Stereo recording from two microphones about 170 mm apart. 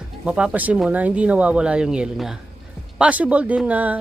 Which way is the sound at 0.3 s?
5° right (ahead or behind).